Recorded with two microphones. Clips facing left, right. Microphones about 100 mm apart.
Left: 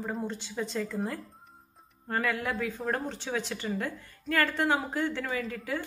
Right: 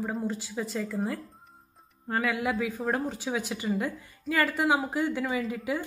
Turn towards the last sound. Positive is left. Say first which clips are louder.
# right 3 dB
turn(degrees=-10)  # may be behind; listen again after turning